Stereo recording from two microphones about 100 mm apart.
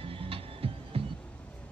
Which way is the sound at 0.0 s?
65° right (ahead or behind).